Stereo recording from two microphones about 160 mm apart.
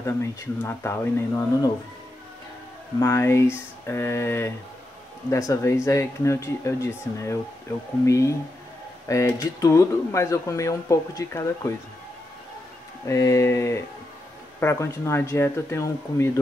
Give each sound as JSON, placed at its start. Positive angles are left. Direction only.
{"t": 0.0, "sound": "speech", "side_deg": 15}
{"t": 3.0, "sound": "speech", "side_deg": 15}
{"t": 13.0, "sound": "speech", "side_deg": 20}